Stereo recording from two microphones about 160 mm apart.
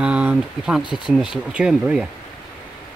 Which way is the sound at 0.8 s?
30° left (ahead or behind).